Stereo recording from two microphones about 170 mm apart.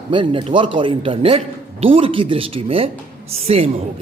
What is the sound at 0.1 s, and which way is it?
A man's voice, 30° right (ahead or behind).